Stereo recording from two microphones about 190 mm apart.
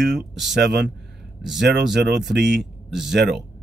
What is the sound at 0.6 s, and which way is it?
Speech, 60° right (ahead or behind).